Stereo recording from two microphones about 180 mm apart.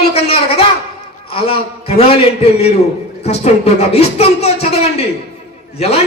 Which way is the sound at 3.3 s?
35° left (ahead or behind).